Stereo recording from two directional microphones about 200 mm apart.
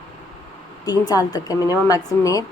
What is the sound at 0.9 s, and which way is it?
A woman's voice, 20° left (ahead or behind).